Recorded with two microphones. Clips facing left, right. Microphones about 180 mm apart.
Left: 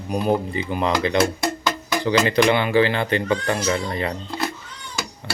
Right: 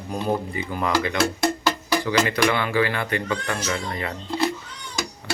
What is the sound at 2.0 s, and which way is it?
Speech, 30° left (ahead or behind).